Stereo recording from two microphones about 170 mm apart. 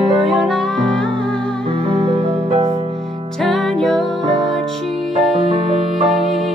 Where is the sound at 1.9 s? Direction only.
35° right (ahead or behind).